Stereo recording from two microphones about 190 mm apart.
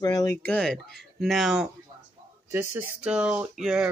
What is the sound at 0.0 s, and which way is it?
Speech, 20° left (ahead or behind).